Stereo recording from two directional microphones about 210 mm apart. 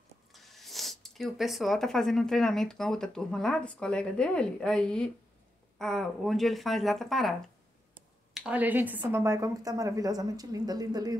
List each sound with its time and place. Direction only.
0.3 s a woman's voice: centre (ahead or behind); by 11.1 s 20° right (ahead or behind)